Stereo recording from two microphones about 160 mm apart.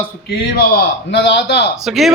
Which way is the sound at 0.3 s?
75° left (ahead or behind).